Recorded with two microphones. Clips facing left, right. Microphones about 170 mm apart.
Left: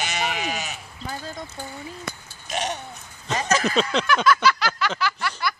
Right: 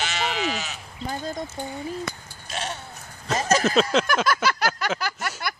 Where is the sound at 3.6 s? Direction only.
Centre (ahead or behind).